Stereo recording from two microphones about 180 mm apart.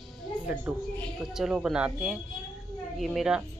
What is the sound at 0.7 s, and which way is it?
A woman's voice, 10° right (ahead or behind).